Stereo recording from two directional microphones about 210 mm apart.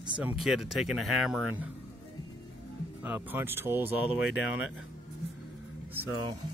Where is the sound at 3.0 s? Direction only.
10° right (ahead or behind).